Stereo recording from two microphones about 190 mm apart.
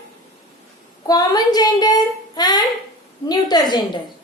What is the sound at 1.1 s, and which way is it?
Speech, 20° left (ahead or behind).